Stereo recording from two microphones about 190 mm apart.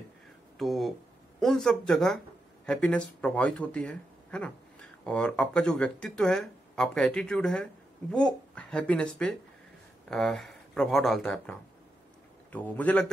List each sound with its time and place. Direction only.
0.6 s a man's voice: centre (ahead or behind)